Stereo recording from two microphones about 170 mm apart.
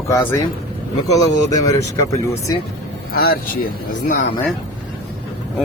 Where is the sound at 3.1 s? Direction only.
60° left (ahead or behind).